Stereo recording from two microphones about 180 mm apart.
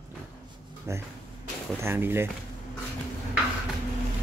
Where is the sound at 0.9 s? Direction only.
15° right (ahead or behind).